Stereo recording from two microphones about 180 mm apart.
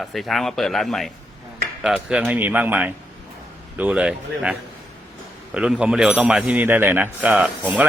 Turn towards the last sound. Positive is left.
turn(degrees=-10)  # may be behind; listen again after turning